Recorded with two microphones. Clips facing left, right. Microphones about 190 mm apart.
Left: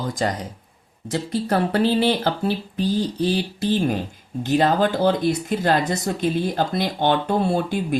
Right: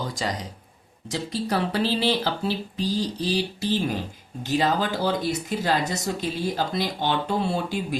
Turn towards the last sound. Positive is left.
turn(degrees=55)  # may be behind; listen again after turning